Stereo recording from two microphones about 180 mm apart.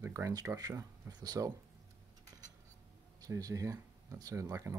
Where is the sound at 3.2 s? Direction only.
20° right (ahead or behind).